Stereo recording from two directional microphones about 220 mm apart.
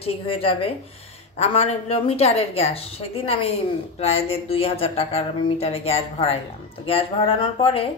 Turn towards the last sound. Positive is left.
turn(degrees=25)  # may be behind; listen again after turning